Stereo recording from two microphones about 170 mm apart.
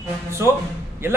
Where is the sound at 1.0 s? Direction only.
15° right (ahead or behind).